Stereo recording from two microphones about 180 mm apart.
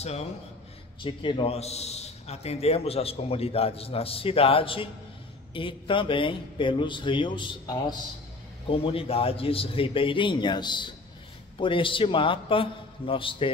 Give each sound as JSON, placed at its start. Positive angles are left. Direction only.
{"t": 0.0, "sound": "a man's voice", "side_deg": 35}